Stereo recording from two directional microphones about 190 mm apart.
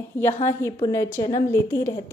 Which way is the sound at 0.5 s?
15° left (ahead or behind).